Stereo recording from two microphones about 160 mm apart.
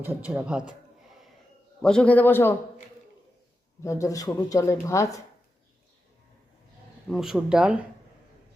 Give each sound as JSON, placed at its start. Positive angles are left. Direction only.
{"t": 0.0, "sound": "speech", "side_deg": -10}
{"t": 1.8, "sound": "a man's voice", "side_deg": 5}
{"t": 3.8, "sound": "speech", "side_deg": 20}
{"t": 7.1, "sound": "speech", "side_deg": 0}